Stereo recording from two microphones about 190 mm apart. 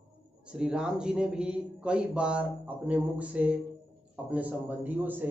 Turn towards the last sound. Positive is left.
turn(degrees=-10)  # may be behind; listen again after turning